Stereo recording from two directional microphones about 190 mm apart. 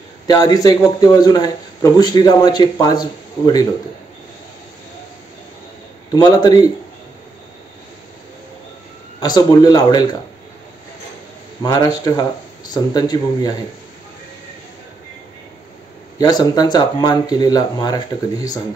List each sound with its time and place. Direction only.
0.3 s a man's voice: 20° left (ahead or behind)
6.1 s a man's voice: 20° left (ahead or behind)
9.2 s a man's voice: 20° left (ahead or behind)
11.6 s a man's voice: 20° left (ahead or behind)
16.2 s a man's voice: 20° left (ahead or behind)